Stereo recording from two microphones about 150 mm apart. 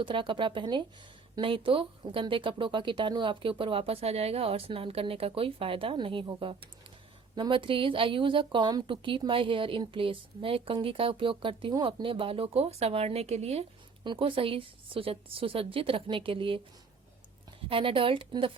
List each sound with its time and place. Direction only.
0.0 s speech: 35° right (ahead or behind)
14.0 s speech: 35° right (ahead or behind)
17.7 s speech: 35° right (ahead or behind)